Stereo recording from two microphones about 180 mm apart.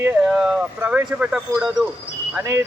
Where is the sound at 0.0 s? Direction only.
5° right (ahead or behind).